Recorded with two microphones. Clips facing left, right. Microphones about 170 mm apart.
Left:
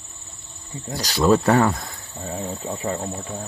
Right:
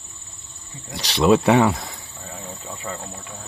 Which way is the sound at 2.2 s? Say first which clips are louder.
Left 9 dB; 40° left (ahead or behind).